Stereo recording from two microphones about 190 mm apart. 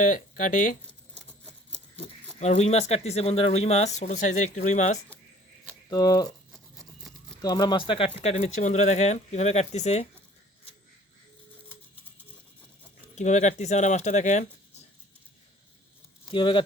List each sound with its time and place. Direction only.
0.0 s speech: 40° left (ahead or behind)
2.4 s speech: 35° left (ahead or behind)
5.9 s speech: 20° left (ahead or behind)
7.4 s speech: 20° left (ahead or behind)
13.1 s speech: 40° left (ahead or behind)
16.3 s speech: 25° left (ahead or behind)